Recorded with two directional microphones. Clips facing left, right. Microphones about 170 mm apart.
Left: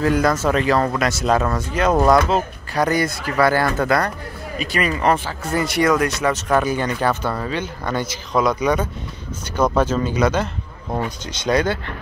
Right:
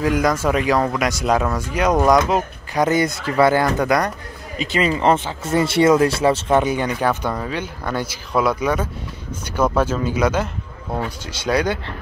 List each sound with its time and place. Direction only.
0.0 s speech: 10° right (ahead or behind)